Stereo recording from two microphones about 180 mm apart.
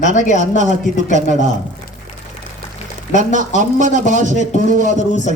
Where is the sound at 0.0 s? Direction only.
40° left (ahead or behind).